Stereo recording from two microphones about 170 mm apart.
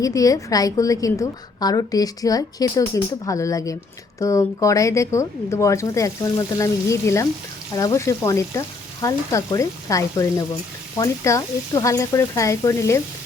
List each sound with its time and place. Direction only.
0.0 s a woman's voice: 20° left (ahead or behind)